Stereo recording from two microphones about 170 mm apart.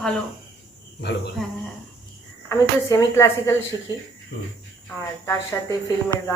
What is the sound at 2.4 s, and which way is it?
A woman's voice, 20° left (ahead or behind).